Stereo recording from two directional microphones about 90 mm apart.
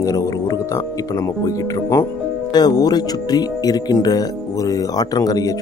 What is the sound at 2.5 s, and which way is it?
Speech, 50° left (ahead or behind).